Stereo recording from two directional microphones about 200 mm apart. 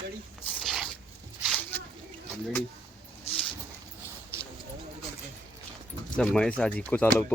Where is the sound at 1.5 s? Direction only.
5° left (ahead or behind).